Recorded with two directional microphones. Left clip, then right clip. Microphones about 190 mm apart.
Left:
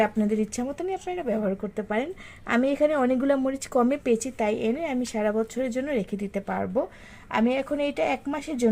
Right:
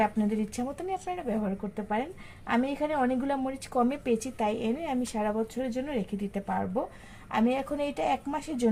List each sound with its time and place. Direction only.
0.0 s a woman's voice: 50° left (ahead or behind)
0.8 s a woman's voice: 35° left (ahead or behind)
7.3 s speech: 35° left (ahead or behind)